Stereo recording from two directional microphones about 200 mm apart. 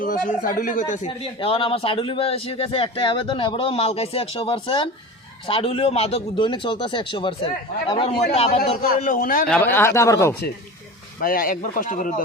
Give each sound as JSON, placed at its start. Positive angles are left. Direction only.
{"t": 0.0, "sound": "a man's voice", "side_deg": 45}
{"t": 8.8, "sound": "speech", "side_deg": 45}
{"t": 9.5, "sound": "speech", "side_deg": 10}
{"t": 11.2, "sound": "speech", "side_deg": 45}